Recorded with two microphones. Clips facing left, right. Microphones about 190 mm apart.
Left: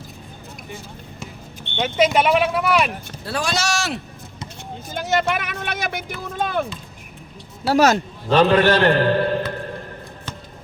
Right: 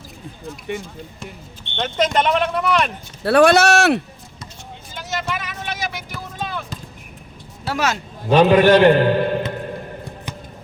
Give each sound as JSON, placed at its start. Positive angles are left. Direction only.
{"t": 1.7, "sound": "speech", "side_deg": 5}
{"t": 3.2, "sound": "speech", "side_deg": -60}
{"t": 4.9, "sound": "vehicle", "side_deg": 55}
{"t": 6.3, "sound": "speech", "side_deg": 50}
{"t": 7.6, "sound": "speech", "side_deg": 40}
{"t": 8.3, "sound": "a sound", "side_deg": -15}